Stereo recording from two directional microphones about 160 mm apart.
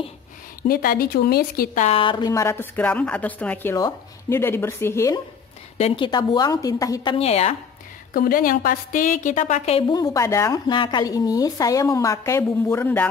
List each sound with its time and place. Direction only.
0.6 s a woman's voice: 65° left (ahead or behind)
1.8 s a woman's voice: 35° left (ahead or behind); by 5.2 s 20° left (ahead or behind)
5.8 s a woman's voice: 40° left (ahead or behind)
6.0 s speech: 25° left (ahead or behind)
7.2 s speech: 40° left (ahead or behind)
8.1 s a woman's voice: 65° left (ahead or behind); by 9.9 s 35° left (ahead or behind)
9.9 s speech: 20° left (ahead or behind)